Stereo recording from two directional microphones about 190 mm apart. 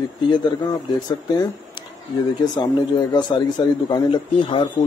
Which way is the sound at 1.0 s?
20° left (ahead or behind).